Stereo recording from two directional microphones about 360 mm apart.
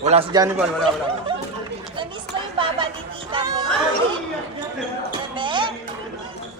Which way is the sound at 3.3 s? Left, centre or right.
Centre.